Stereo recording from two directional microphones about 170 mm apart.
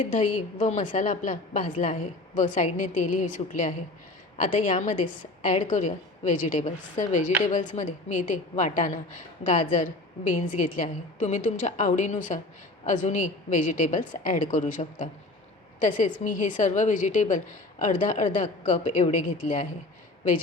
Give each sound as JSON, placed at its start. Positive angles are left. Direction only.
{"t": 0.1, "sound": "a woman's voice", "side_deg": 45}